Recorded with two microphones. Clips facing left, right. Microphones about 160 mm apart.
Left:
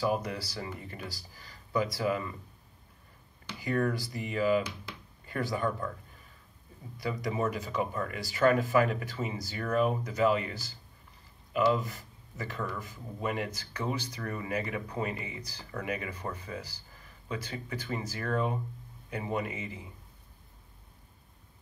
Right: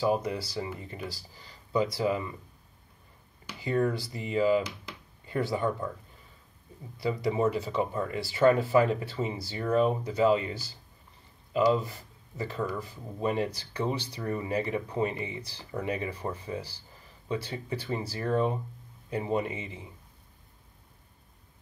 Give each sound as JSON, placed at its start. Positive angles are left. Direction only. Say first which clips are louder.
{"t": 0.0, "sound": "speech", "louder": "right 3 dB", "side_deg": -25}
{"t": 3.6, "sound": "speech", "louder": "right 2 dB", "side_deg": -25}
{"t": 7.0, "sound": "speech", "louder": "right 4 dB", "side_deg": -25}